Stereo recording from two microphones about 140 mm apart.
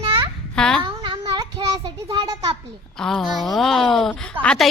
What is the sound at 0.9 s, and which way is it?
Child singing, 40° right (ahead or behind).